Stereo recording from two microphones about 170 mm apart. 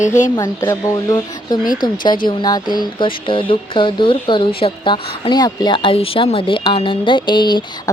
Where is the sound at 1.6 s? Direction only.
55° left (ahead or behind).